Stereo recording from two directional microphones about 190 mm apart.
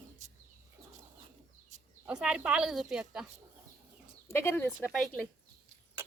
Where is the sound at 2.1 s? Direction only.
5° right (ahead or behind).